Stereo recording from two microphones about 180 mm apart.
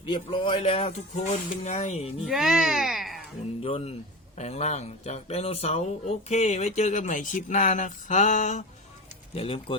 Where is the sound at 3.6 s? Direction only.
30° left (ahead or behind).